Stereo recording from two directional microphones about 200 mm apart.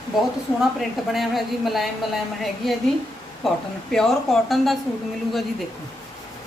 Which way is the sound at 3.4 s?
Centre (ahead or behind).